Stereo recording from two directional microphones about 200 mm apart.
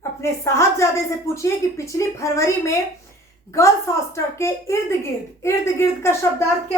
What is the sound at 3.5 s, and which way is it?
A woman's voice, 15° left (ahead or behind).